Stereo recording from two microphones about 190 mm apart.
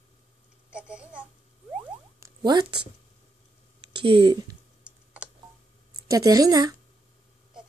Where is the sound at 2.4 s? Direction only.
20° right (ahead or behind).